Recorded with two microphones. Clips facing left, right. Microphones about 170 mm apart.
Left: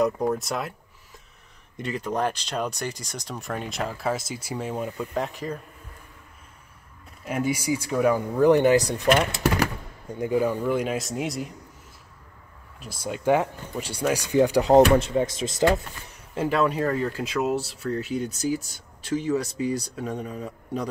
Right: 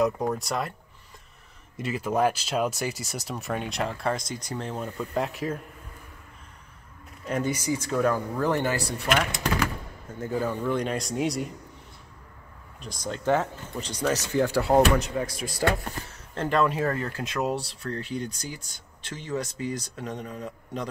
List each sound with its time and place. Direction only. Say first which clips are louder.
0.0 s speech: left 2 dB; centre (ahead or behind)
1.8 s speech: right 2 dB; 5° right (ahead or behind)
7.2 s speech: left 2 dB; 10° left (ahead or behind)
12.8 s speech: left 3 dB; 10° left (ahead or behind)
16.1 s speech: left 3 dB; 5° left (ahead or behind)